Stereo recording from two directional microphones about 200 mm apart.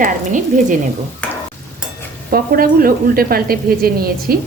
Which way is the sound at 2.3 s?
45° right (ahead or behind).